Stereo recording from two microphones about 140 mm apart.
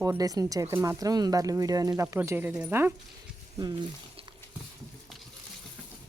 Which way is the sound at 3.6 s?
30° right (ahead or behind).